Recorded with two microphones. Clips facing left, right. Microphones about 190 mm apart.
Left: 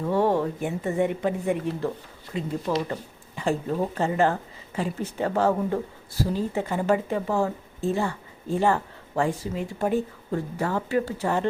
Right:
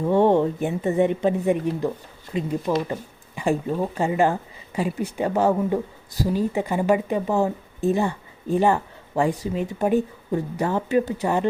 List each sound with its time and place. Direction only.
0.1 s speech: 25° right (ahead or behind)